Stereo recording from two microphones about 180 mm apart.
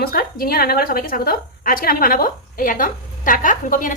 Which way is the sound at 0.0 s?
55° left (ahead or behind).